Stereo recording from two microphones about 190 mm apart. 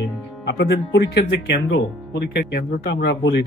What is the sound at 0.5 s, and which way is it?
Speech, 60° left (ahead or behind).